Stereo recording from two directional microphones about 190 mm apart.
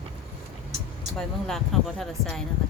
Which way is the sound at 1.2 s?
Centre (ahead or behind).